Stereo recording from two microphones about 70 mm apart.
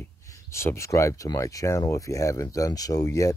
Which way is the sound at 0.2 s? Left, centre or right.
Left.